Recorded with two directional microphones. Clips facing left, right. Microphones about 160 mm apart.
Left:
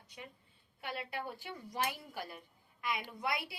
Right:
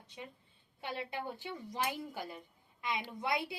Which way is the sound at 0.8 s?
25° right (ahead or behind).